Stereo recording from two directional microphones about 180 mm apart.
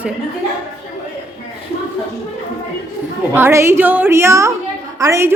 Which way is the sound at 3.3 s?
15° right (ahead or behind).